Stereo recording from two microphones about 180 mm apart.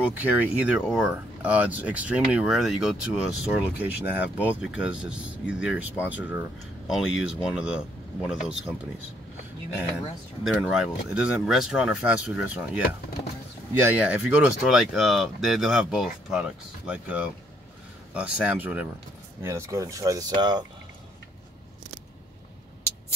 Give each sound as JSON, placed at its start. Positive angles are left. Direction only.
{"t": 0.0, "sound": "speech", "side_deg": -5}
{"t": 9.8, "sound": "speech", "side_deg": -5}